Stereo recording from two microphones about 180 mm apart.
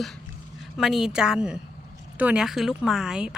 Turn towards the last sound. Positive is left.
turn(degrees=-5)  # may be behind; listen again after turning